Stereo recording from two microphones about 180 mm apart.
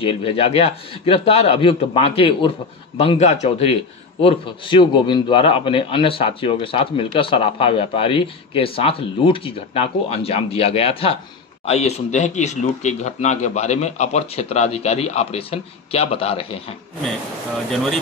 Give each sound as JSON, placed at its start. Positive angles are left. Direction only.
{"t": 0.0, "sound": "a man's voice", "side_deg": 30}